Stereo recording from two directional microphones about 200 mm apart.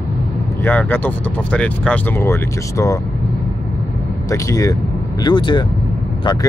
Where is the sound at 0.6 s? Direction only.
10° left (ahead or behind).